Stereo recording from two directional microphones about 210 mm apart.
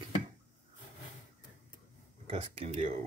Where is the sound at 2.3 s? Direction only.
30° right (ahead or behind).